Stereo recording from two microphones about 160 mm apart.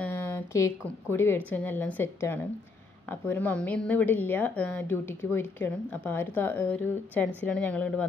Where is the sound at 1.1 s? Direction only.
15° left (ahead or behind).